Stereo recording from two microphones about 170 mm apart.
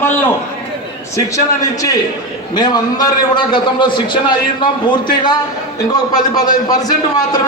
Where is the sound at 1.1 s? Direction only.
20° left (ahead or behind).